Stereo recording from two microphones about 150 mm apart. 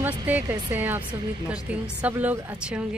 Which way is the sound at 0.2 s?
15° right (ahead or behind).